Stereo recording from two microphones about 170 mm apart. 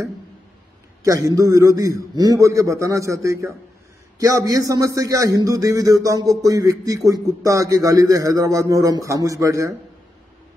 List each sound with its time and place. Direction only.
1.0 s a man's voice: 20° right (ahead or behind)